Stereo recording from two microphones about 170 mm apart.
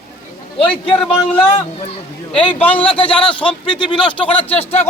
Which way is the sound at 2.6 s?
10° left (ahead or behind).